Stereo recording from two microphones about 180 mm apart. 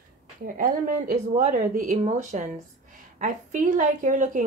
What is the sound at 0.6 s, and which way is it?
A woman's voice, 50° right (ahead or behind).